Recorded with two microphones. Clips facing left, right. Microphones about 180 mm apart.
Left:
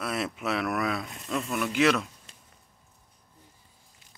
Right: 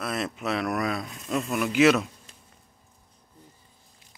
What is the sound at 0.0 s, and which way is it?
Speech, 5° left (ahead or behind).